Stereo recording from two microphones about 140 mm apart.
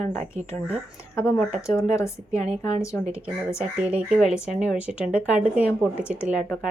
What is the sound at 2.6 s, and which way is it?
Speech, 25° left (ahead or behind).